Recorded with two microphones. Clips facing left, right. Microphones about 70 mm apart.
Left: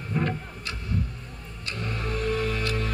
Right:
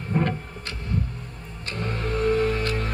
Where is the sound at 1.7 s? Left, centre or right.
Right.